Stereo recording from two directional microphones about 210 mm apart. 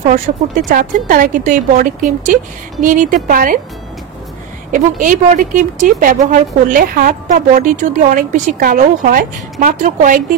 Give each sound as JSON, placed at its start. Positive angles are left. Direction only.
{"t": 0.0, "sound": "speech", "side_deg": -35}
{"t": 4.7, "sound": "speech", "side_deg": -40}